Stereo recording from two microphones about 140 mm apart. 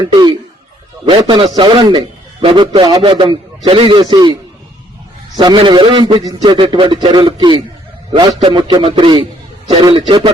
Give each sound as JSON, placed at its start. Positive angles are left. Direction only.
{"t": 1.2, "sound": "a man's voice", "side_deg": -35}
{"t": 5.4, "sound": "a man's voice", "side_deg": -35}
{"t": 8.3, "sound": "a man's voice", "side_deg": -50}
{"t": 8.7, "sound": "a man's voice", "side_deg": -35}